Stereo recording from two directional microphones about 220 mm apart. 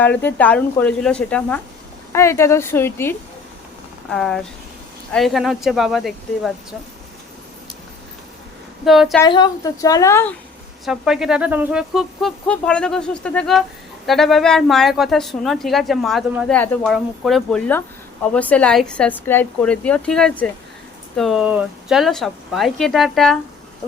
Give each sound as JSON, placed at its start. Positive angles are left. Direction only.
{"t": 0.2, "sound": "speech", "side_deg": 5}
{"t": 8.8, "sound": "speech", "side_deg": 0}
{"t": 9.2, "sound": "speech", "side_deg": 15}
{"t": 10.8, "sound": "speech", "side_deg": 0}